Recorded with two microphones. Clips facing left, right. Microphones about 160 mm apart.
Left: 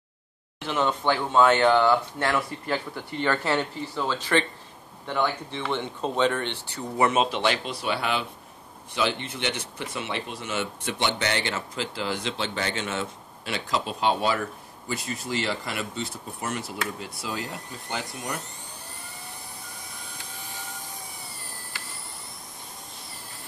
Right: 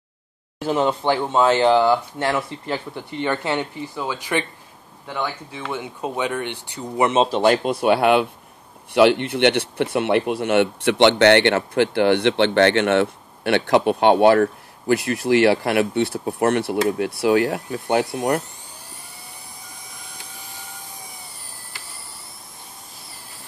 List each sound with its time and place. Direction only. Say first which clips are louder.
0.6 s speech: right 6 dB; 35° right (ahead or behind)
7.2 s speech: right 9 dB; 40° right (ahead or behind); by 18.4 s 60° right (ahead or behind)